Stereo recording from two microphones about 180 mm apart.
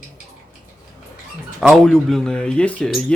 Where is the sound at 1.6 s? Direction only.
Centre (ahead or behind).